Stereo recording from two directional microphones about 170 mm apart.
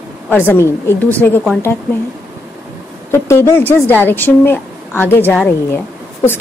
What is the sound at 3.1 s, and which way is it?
Speech, 15° left (ahead or behind).